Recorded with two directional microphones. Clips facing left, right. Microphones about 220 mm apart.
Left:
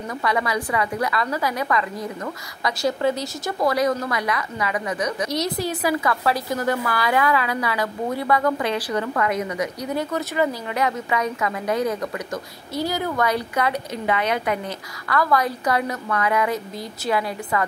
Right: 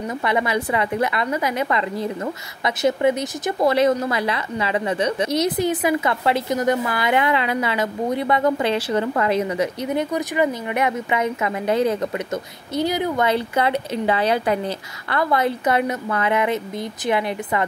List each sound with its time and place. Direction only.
0.2 s a woman's voice: 25° right (ahead or behind)